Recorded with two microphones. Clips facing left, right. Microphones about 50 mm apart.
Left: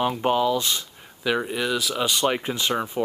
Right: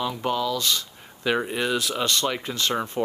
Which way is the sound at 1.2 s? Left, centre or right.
Centre.